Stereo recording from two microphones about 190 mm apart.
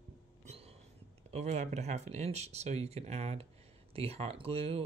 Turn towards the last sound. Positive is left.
turn(degrees=-30)  # may be behind; listen again after turning